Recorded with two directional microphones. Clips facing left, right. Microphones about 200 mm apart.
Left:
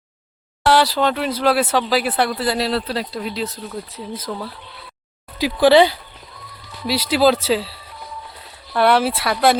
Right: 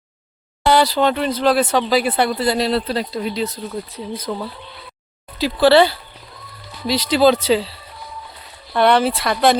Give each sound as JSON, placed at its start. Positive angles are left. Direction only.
{"t": 0.6, "sound": "speech", "side_deg": 0}
{"t": 5.4, "sound": "speech", "side_deg": 15}